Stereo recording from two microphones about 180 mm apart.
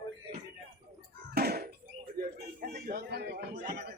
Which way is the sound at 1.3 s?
60° right (ahead or behind).